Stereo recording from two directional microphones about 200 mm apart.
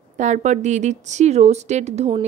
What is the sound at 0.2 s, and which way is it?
A woman's voice, 35° right (ahead or behind).